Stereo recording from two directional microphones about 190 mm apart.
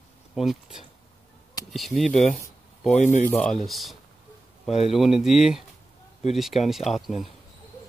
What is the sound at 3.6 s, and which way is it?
Speech, centre (ahead or behind).